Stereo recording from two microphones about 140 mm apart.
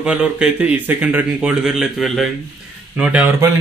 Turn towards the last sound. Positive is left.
turn(degrees=-10)  # may be behind; listen again after turning